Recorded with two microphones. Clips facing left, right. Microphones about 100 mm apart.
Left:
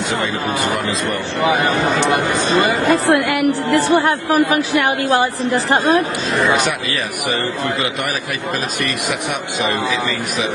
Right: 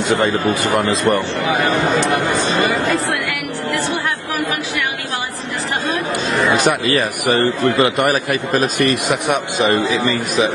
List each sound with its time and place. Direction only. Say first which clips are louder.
1.4 s speech: left 1 dB; 15° left (ahead or behind)
2.9 s a woman's voice: left 5 dB; 35° left (ahead or behind)